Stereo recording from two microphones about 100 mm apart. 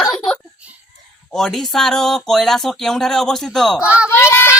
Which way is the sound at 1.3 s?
5° left (ahead or behind).